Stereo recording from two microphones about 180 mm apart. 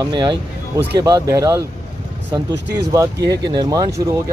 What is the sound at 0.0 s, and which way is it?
Speech, 25° right (ahead or behind).